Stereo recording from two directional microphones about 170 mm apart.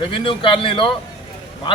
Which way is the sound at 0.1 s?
30° left (ahead or behind).